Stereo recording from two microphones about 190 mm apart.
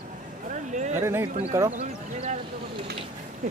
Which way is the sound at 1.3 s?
30° right (ahead or behind).